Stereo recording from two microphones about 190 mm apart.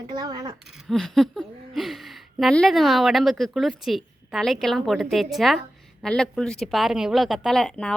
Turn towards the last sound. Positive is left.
turn(degrees=5)  # may be behind; listen again after turning